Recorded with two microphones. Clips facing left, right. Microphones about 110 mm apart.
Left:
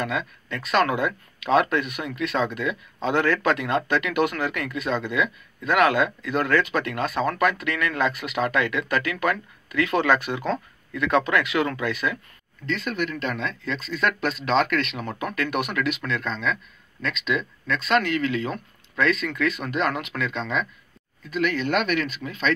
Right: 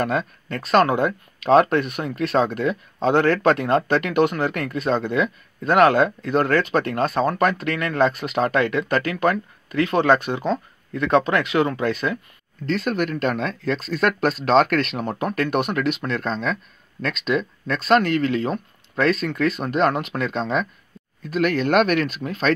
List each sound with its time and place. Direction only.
0.0 s speech: 40° right (ahead or behind)